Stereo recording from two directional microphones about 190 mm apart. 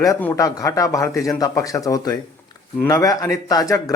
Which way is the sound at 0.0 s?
15° left (ahead or behind).